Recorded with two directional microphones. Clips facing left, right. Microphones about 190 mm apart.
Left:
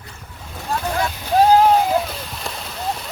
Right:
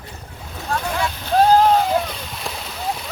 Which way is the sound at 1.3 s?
10° left (ahead or behind).